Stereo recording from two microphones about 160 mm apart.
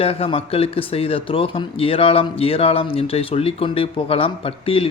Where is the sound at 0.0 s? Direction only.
40° left (ahead or behind).